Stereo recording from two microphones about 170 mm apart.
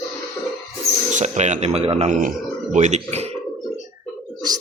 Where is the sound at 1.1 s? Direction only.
45° right (ahead or behind).